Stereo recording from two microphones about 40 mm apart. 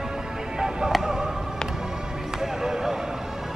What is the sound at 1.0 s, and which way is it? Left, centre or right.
Basketball bounce, centre.